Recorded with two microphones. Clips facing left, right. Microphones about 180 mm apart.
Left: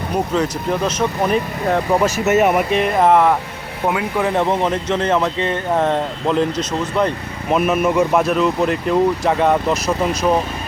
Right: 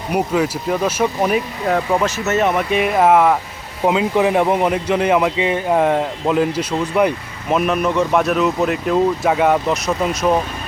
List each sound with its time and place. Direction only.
0.1 s speech: 10° right (ahead or behind)
2.0 s speech: 10° left (ahead or behind)
2.6 s speech: 5° right (ahead or behind)
3.8 s speech: 20° right (ahead or behind)
7.5 s speech: centre (ahead or behind)